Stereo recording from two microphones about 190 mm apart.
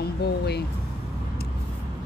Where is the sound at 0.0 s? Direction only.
60° left (ahead or behind).